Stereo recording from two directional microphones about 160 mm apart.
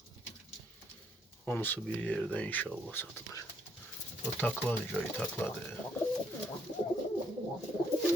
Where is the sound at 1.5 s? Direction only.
10° left (ahead or behind).